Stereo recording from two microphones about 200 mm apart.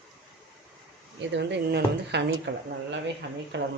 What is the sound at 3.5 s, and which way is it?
Speech, 65° right (ahead or behind).